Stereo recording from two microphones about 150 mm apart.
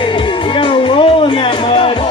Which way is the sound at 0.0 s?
30° left (ahead or behind).